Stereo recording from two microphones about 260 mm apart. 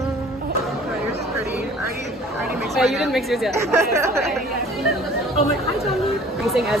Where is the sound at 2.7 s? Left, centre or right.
Centre.